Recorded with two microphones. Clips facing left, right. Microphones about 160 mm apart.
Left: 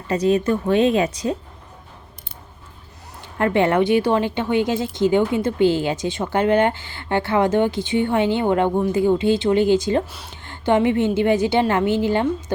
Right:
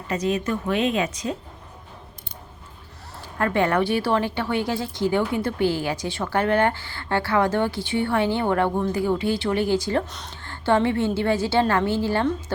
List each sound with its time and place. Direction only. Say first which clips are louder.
0.1 s a woman's voice: left 6 dB; 30° left (ahead or behind)
3.3 s a woman's voice: left 4 dB; 20° left (ahead or behind)